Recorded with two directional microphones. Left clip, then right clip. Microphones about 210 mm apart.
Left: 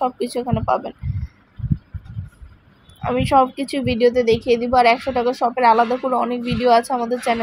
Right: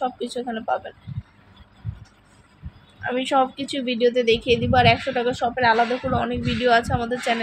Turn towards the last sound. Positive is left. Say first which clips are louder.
# left 3 dB
turn(degrees=10)  # may be behind; listen again after turning